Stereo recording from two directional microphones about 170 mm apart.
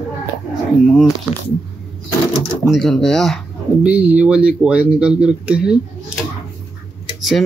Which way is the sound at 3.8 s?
10° right (ahead or behind).